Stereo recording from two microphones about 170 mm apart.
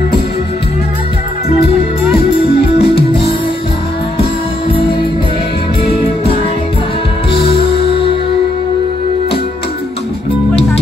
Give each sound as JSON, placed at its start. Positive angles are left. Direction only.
{"t": 2.8, "sound": "music", "side_deg": 35}
{"t": 7.4, "sound": "music", "side_deg": 30}